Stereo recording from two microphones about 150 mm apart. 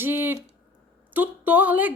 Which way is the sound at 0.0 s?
15° right (ahead or behind).